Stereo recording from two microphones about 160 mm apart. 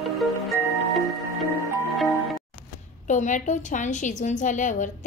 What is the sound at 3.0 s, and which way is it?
A woman's voice, 50° left (ahead or behind).